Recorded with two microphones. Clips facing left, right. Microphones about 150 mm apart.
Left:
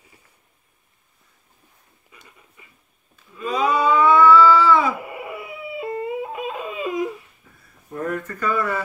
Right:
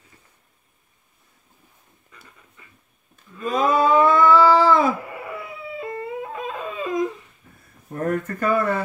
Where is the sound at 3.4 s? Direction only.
45° right (ahead or behind).